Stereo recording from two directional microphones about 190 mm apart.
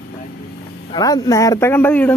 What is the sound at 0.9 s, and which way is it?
Speech, 20° left (ahead or behind).